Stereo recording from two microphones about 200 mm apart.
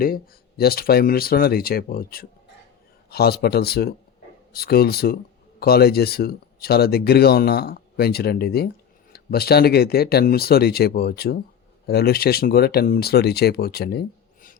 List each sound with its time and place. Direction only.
0.0 s speech: 50° left (ahead or behind)